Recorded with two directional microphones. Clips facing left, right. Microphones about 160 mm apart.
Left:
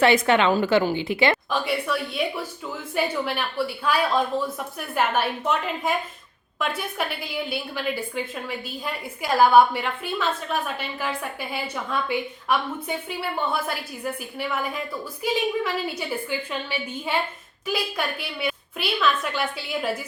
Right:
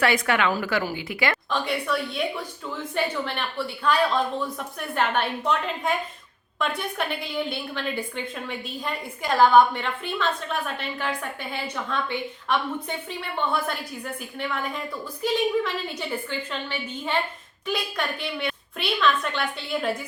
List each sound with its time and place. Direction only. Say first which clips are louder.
0.0 s a woman's voice: left 4 dB; 25° left (ahead or behind)
1.5 s a woman's voice: left 1 dB; 5° left (ahead or behind)
7.0 s a woman's voice: right 1 dB; 5° left (ahead or behind)